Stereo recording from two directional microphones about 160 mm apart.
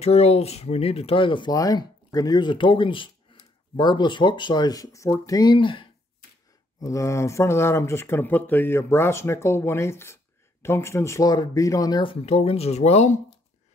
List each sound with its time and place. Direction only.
0.0 s speech: 40° left (ahead or behind)
6.8 s speech: 20° left (ahead or behind); by 13.2 s 45° left (ahead or behind)